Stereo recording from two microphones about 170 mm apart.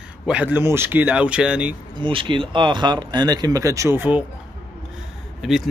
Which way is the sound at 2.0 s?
30° right (ahead or behind).